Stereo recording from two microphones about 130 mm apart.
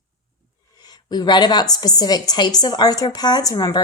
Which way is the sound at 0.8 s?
30° left (ahead or behind).